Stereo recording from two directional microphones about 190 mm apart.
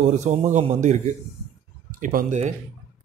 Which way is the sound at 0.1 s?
40° right (ahead or behind).